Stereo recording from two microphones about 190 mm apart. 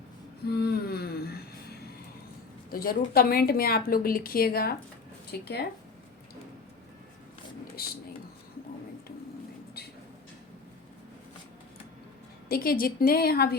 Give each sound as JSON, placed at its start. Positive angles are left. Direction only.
{"t": 0.4, "sound": "a sound", "side_deg": 55}
{"t": 2.6, "sound": "a woman's voice", "side_deg": 50}
{"t": 7.8, "sound": "speech", "side_deg": 55}
{"t": 12.5, "sound": "a woman's voice", "side_deg": 50}